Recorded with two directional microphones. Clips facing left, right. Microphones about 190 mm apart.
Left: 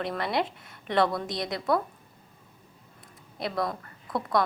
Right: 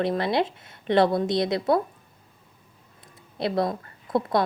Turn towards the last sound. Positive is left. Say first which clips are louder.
# right 4 dB
turn(degrees=-25)  # may be behind; listen again after turning